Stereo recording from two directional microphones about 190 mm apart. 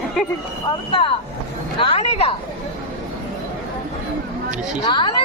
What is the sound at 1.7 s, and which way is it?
Speech, 30° left (ahead or behind).